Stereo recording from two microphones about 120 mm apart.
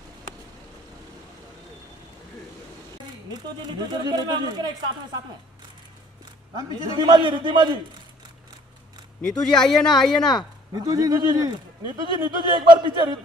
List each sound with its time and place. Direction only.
3.3 s speech: 35° right (ahead or behind)
6.9 s speech: 40° right (ahead or behind)
9.2 s speech: 5° left (ahead or behind)
10.7 s speech: 30° right (ahead or behind)